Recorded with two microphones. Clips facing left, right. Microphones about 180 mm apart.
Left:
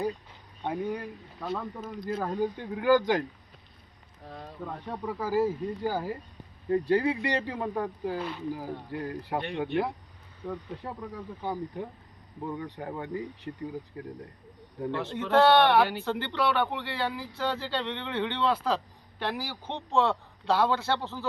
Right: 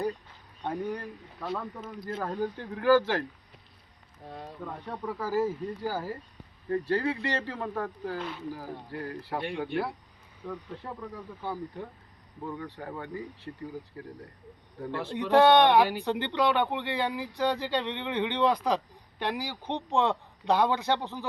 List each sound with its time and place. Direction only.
0.6 s speech: 10° left (ahead or behind)
2.0 s speech: 15° left (ahead or behind)
4.6 s speech: 10° left (ahead or behind)
10.4 s speech: 10° left (ahead or behind)
14.9 s speech: 15° right (ahead or behind)